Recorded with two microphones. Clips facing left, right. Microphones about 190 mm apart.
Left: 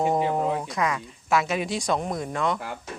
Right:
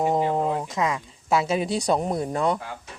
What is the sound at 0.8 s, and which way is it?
Speech, 25° right (ahead or behind).